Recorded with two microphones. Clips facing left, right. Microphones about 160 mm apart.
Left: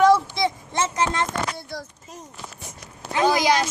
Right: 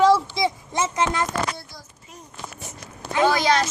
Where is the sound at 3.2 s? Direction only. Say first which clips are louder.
Left 1 dB; 15° left (ahead or behind).